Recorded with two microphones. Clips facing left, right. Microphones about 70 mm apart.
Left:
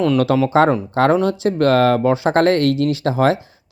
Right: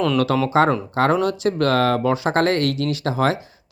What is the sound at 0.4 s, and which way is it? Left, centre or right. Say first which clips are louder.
A man's voice: left 3 dB; left.